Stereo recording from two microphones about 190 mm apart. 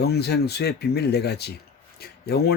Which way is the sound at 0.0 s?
60° left (ahead or behind).